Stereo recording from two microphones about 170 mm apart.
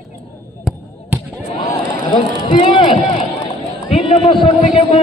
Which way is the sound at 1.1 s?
10° right (ahead or behind).